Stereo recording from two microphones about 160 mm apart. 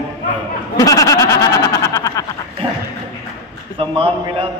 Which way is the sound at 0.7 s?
20° left (ahead or behind).